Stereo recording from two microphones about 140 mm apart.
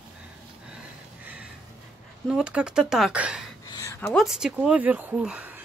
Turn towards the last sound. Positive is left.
turn(degrees=-10)  # may be behind; listen again after turning